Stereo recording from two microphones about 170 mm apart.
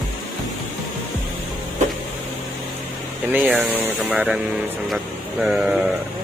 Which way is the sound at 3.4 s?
5° right (ahead or behind).